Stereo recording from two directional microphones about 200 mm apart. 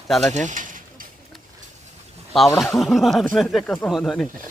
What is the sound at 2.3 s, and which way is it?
A man's voice, centre (ahead or behind).